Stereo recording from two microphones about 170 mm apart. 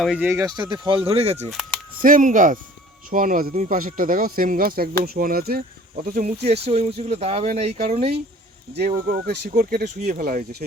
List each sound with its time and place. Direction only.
0.0 s speech: 5° right (ahead or behind)
0.3 s speech: 20° right (ahead or behind); by 1.5 s 40° right (ahead or behind)
2.0 s speech: 55° right (ahead or behind)
6.4 s speech: 40° right (ahead or behind)
9.0 s speech: 70° right (ahead or behind)
9.6 s speech: 55° right (ahead or behind)